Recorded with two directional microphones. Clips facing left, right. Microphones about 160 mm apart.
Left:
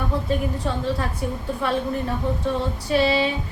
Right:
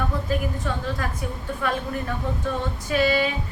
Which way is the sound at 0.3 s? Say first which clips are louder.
Left 2 dB; 30° left (ahead or behind).